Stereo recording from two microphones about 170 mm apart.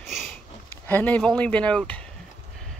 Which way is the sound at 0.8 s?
10° left (ahead or behind).